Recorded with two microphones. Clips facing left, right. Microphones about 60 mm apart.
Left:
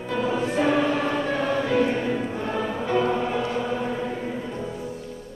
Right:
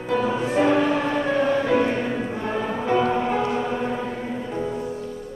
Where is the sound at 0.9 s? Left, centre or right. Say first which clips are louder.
Right 2 dB; centre.